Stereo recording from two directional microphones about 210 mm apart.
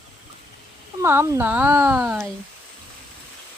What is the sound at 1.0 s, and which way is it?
Speech, 10° right (ahead or behind).